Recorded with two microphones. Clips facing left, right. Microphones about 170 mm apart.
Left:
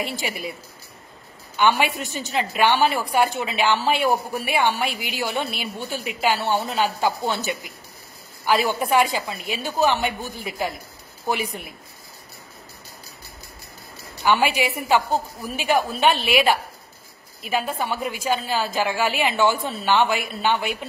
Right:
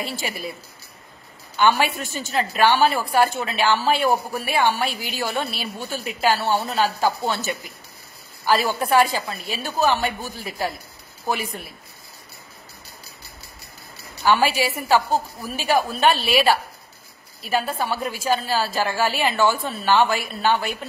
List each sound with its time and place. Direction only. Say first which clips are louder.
0.0 s speech: left 1 dB; 15° left (ahead or behind)
1.6 s speech: right 1 dB; 15° left (ahead or behind)
14.2 s speech: right 1 dB; 15° left (ahead or behind)